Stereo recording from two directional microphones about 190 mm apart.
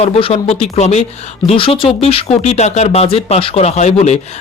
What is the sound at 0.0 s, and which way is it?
A man's voice, 30° left (ahead or behind).